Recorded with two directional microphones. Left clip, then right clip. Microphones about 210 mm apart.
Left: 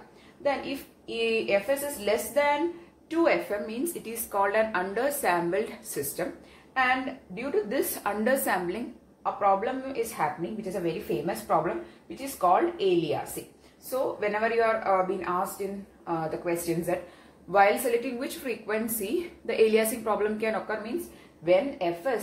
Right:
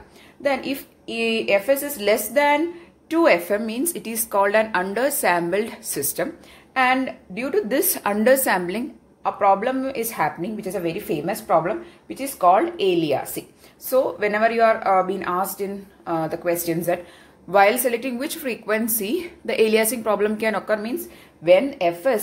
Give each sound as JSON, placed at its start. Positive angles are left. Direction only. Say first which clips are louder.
{"t": 0.4, "sound": "a woman's voice", "louder": "right 6 dB", "side_deg": -55}
{"t": 7.3, "sound": "a woman's voice", "louder": "right 6 dB", "side_deg": -50}